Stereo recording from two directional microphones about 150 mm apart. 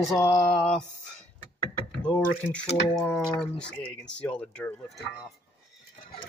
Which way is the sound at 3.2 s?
5° left (ahead or behind).